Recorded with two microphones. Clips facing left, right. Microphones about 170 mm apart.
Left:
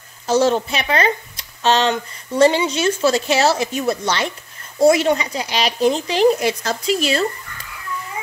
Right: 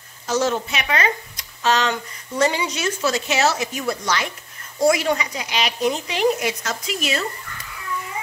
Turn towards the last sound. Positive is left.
turn(degrees=30)  # may be behind; listen again after turning